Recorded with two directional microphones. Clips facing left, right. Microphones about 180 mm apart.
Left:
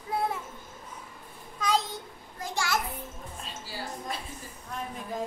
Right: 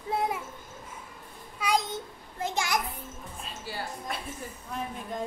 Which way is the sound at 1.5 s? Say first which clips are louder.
Even; 10° right (ahead or behind).